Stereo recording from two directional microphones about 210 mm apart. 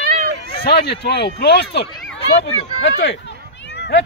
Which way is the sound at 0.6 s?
50° left (ahead or behind).